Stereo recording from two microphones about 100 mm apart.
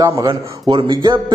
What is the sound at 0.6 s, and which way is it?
Speech, 50° right (ahead or behind).